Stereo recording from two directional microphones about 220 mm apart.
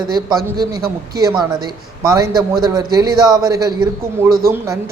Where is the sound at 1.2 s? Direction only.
15° right (ahead or behind).